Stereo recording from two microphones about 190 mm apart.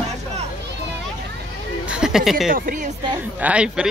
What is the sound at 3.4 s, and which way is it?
Speech, 5° right (ahead or behind).